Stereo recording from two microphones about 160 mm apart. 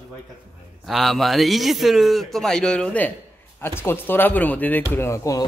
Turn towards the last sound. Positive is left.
turn(degrees=20)  # may be behind; listen again after turning